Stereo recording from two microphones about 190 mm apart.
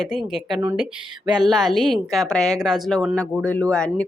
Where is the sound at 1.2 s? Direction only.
20° right (ahead or behind).